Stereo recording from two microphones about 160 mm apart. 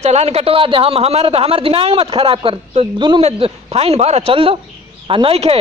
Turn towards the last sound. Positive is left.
turn(degrees=-40)  # may be behind; listen again after turning